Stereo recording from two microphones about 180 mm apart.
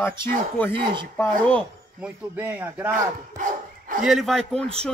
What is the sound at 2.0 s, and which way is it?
Speech, 10° right (ahead or behind).